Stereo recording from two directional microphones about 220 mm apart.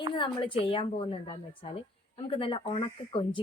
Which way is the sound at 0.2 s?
25° left (ahead or behind).